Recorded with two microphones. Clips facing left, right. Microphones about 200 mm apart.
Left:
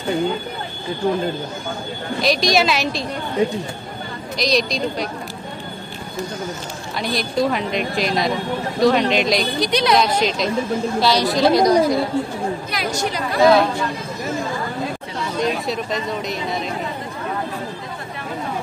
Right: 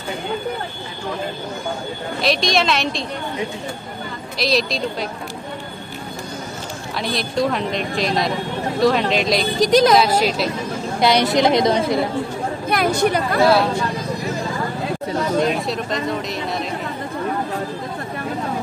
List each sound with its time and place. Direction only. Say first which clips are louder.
2.2 s speech: left 1 dB; centre (ahead or behind)
4.4 s speech: even; centre (ahead or behind)
7.0 s speech: left 1 dB; centre (ahead or behind)
9.6 s a woman's voice: right 9 dB; 45° right (ahead or behind)
9.9 s speech: right 2 dB; 5° right (ahead or behind)
11.0 s a woman's voice: right 3 dB; 20° right (ahead or behind)
12.6 s speech: right 6 dB; 55° right (ahead or behind)
15.4 s speech: right 1 dB; centre (ahead or behind)